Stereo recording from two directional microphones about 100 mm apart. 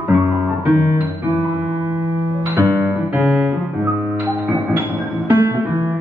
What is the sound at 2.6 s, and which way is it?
Music, 20° right (ahead or behind).